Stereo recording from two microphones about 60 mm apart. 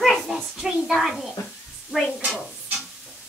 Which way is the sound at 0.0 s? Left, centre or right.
Centre.